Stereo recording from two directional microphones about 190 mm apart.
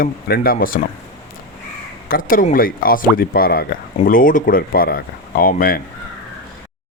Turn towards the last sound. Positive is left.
turn(degrees=50)  # may be behind; listen again after turning